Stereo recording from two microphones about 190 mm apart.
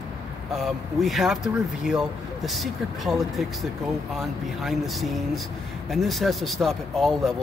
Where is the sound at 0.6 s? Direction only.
Centre (ahead or behind).